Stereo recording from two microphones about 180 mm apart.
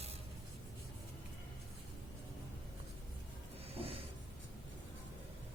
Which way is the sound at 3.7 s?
30° right (ahead or behind).